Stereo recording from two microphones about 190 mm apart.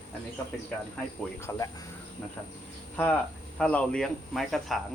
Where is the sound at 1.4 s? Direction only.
15° left (ahead or behind).